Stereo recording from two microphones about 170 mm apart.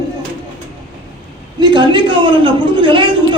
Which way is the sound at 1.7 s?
25° right (ahead or behind).